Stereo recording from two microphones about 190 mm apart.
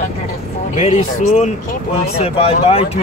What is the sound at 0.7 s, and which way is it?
Speech, 40° left (ahead or behind).